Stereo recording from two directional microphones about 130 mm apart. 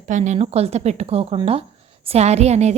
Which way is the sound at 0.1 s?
65° right (ahead or behind).